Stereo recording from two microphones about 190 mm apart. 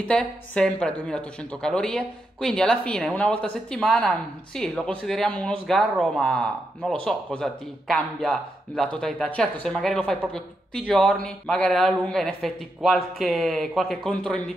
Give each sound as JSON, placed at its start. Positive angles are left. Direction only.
{"t": 0.0, "sound": "speech", "side_deg": 5}